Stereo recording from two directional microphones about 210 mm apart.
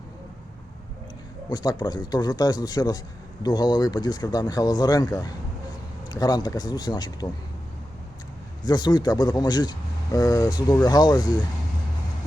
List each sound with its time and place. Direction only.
1.5 s speech: 20° left (ahead or behind)
8.6 s speech: 20° left (ahead or behind)